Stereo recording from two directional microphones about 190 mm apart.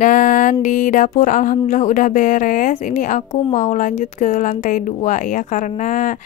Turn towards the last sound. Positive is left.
turn(degrees=40)  # may be behind; listen again after turning